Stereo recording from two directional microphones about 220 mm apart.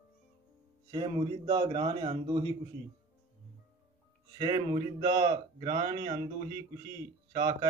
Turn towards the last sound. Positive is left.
turn(degrees=-15)  # may be behind; listen again after turning